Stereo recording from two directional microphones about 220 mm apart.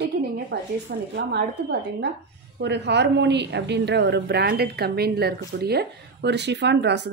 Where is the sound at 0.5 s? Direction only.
50° right (ahead or behind).